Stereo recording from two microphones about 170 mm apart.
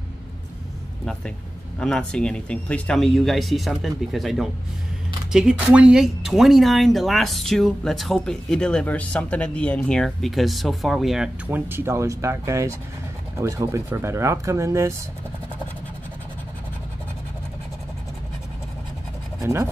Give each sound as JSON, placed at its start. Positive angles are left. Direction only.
{"t": 1.8, "sound": "speech", "side_deg": 5}
{"t": 19.4, "sound": "speech", "side_deg": -15}